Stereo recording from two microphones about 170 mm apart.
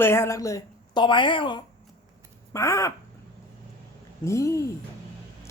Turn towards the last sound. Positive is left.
turn(degrees=15)  # may be behind; listen again after turning